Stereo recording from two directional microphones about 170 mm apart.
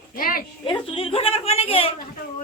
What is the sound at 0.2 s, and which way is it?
Speech, 55° left (ahead or behind).